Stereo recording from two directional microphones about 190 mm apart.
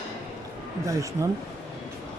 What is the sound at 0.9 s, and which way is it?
Speech, 15° right (ahead or behind).